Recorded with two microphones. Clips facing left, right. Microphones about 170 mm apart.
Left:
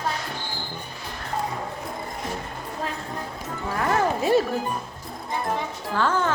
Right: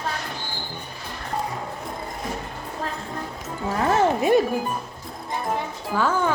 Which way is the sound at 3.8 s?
20° right (ahead or behind).